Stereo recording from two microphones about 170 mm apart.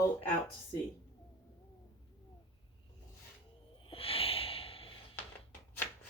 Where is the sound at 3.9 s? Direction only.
35° left (ahead or behind).